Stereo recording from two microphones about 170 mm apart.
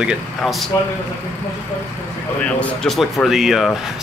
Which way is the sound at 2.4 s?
5° left (ahead or behind).